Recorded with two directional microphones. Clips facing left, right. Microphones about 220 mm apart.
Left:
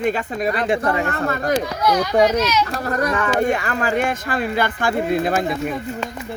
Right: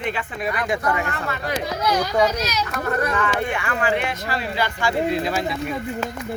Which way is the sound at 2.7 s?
35° left (ahead or behind).